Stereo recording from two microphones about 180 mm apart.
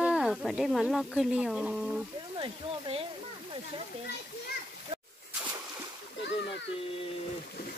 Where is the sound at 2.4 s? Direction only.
30° right (ahead or behind).